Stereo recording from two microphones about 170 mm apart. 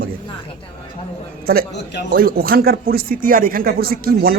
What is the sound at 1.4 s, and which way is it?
A man's voice, 60° right (ahead or behind).